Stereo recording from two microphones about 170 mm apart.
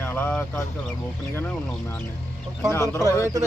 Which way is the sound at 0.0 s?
10° left (ahead or behind).